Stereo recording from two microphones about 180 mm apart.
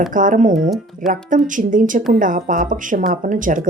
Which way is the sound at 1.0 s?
Centre (ahead or behind).